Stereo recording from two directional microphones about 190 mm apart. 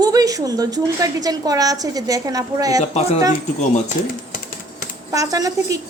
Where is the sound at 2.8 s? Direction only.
35° left (ahead or behind).